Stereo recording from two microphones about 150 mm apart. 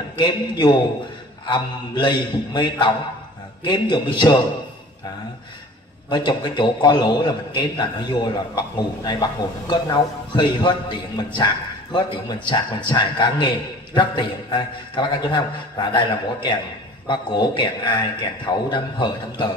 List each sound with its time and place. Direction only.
0.1 s a man's voice: 30° left (ahead or behind)
6.0 s a man's voice: 30° left (ahead or behind)
17.1 s a man's voice: 30° left (ahead or behind)